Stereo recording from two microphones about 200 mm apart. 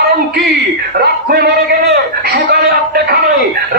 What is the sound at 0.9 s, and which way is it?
Speech, 50° right (ahead or behind).